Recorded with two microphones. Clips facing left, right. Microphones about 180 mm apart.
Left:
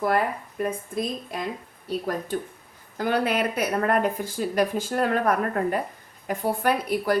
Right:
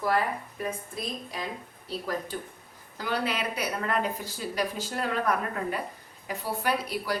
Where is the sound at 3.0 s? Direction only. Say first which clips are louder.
Left 6 dB; 50° left (ahead or behind).